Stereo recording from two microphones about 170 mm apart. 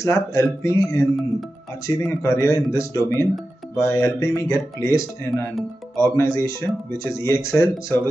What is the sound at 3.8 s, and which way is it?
Speech, 15° left (ahead or behind).